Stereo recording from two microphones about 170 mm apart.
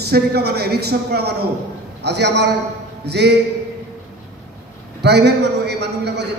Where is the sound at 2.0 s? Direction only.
80° right.